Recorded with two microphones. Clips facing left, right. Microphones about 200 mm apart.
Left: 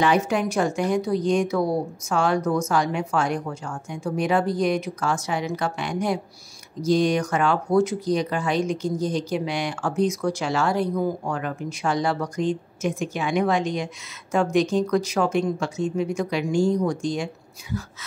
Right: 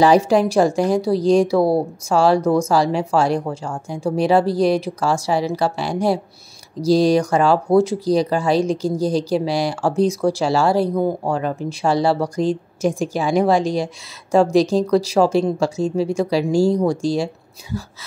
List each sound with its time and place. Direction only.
0.0 s speech: 35° right (ahead or behind)